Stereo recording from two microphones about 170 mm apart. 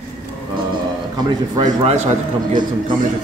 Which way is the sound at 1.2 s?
25° right (ahead or behind).